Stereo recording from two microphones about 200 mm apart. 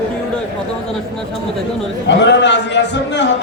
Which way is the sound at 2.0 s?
60° left (ahead or behind).